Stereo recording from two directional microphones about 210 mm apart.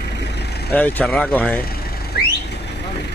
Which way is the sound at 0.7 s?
10° left (ahead or behind).